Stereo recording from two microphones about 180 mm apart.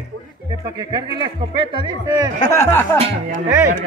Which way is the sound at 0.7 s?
25° right (ahead or behind).